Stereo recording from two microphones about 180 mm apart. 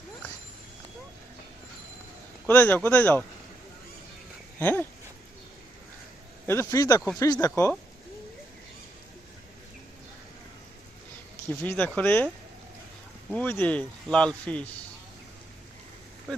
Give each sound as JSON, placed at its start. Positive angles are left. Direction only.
{"t": 2.5, "sound": "speech", "side_deg": 10}
{"t": 4.6, "sound": "speech", "side_deg": 10}
{"t": 6.5, "sound": "speech", "side_deg": 15}
{"t": 11.6, "sound": "speech", "side_deg": 10}
{"t": 13.3, "sound": "speech", "side_deg": 10}